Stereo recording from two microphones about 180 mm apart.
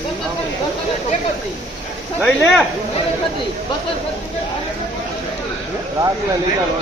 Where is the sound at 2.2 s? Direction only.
5° left (ahead or behind).